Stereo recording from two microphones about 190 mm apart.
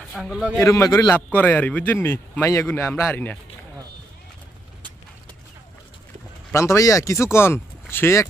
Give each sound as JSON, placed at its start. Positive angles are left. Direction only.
{"t": 0.1, "sound": "speech", "side_deg": 0}
{"t": 0.6, "sound": "a man's voice", "side_deg": 15}
{"t": 6.5, "sound": "a man's voice", "side_deg": 15}